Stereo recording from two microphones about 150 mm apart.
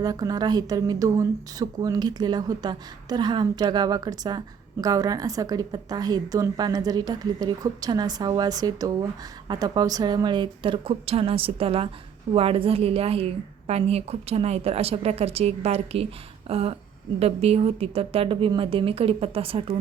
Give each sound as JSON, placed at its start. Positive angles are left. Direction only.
{"t": 0.0, "sound": "a woman's voice", "side_deg": -25}